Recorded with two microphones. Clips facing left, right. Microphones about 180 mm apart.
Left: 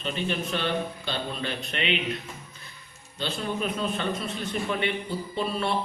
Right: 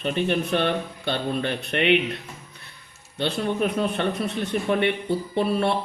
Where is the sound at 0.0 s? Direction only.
55° right (ahead or behind).